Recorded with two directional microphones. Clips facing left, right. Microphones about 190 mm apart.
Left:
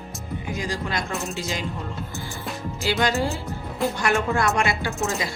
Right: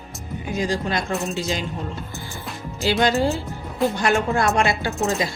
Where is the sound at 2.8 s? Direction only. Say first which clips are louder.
Right 4 dB; 25° right (ahead or behind).